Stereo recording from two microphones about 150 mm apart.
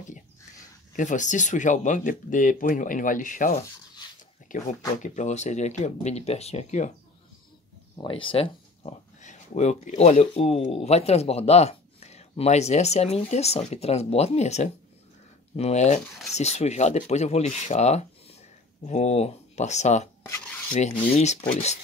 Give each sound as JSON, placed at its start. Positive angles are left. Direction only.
{"t": 0.9, "sound": "speech", "side_deg": 55}
{"t": 7.9, "sound": "speech", "side_deg": 35}
{"t": 21.2, "sound": "speech", "side_deg": 50}